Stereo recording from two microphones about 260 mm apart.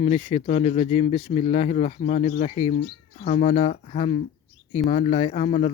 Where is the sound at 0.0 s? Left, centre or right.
Left.